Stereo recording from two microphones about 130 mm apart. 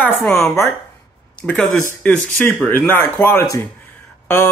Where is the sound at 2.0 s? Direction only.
10° left (ahead or behind).